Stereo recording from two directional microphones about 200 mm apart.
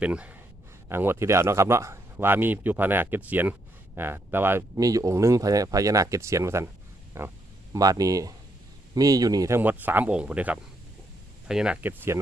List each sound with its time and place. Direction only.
0.0 s speech: 5° right (ahead or behind)